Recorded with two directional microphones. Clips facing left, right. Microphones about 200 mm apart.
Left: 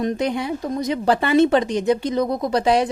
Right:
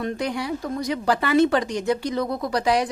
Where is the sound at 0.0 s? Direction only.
20° left (ahead or behind).